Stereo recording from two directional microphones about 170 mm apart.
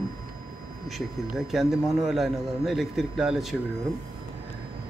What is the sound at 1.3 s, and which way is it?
A man's voice, centre (ahead or behind).